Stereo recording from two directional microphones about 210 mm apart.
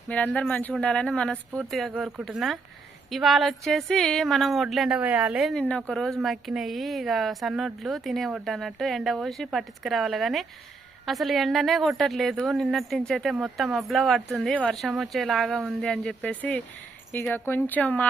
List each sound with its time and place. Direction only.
0.1 s a woman's voice: 5° left (ahead or behind)